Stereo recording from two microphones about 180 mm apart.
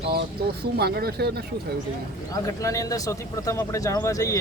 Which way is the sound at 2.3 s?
20° left (ahead or behind).